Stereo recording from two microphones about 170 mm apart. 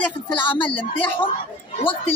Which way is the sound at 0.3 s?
30° left (ahead or behind).